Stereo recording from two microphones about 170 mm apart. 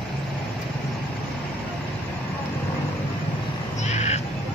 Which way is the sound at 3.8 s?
40° left (ahead or behind).